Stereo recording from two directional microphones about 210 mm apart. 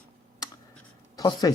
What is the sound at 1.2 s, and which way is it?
Speech, 20° left (ahead or behind).